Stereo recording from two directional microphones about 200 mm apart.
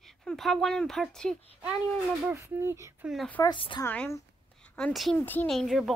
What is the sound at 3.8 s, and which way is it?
A woman's voice, 10° left (ahead or behind).